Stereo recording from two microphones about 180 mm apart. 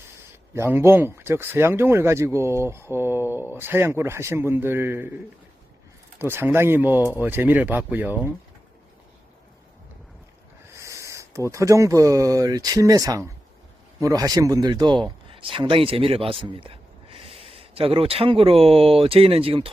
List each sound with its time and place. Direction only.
0.5 s speech: 15° right (ahead or behind)
6.1 s speech: 15° right (ahead or behind)
10.7 s a sound: 15° right (ahead or behind)
11.5 s speech: 15° right (ahead or behind)